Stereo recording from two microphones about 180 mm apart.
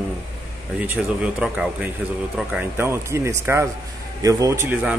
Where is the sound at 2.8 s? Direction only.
15° right (ahead or behind).